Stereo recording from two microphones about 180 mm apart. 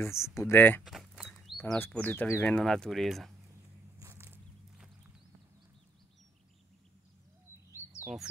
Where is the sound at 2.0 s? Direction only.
10° left (ahead or behind).